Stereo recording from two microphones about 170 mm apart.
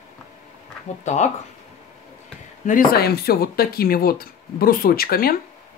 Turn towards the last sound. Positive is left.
turn(degrees=60)  # may be behind; listen again after turning